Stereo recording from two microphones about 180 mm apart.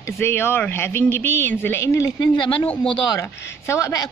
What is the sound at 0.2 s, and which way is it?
Speech, 15° left (ahead or behind).